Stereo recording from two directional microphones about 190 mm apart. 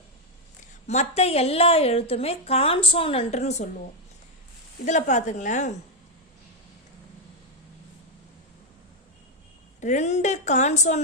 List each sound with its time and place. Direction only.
0.9 s a woman's voice: 35° left (ahead or behind)
4.9 s a woman's voice: 40° left (ahead or behind)
9.8 s a woman's voice: 40° left (ahead or behind)